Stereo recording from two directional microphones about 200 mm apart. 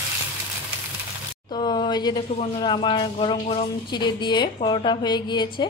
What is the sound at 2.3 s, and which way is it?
A woman's voice, 25° left (ahead or behind).